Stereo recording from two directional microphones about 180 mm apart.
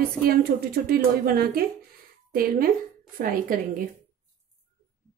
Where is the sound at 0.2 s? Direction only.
55° right (ahead or behind).